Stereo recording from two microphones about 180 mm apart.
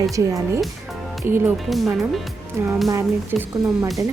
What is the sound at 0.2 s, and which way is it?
Speech, 20° right (ahead or behind).